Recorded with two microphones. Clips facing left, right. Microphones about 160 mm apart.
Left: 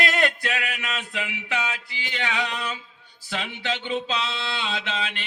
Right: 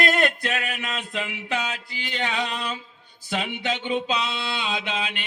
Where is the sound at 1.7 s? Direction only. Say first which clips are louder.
Right 1 dB; 40° right (ahead or behind).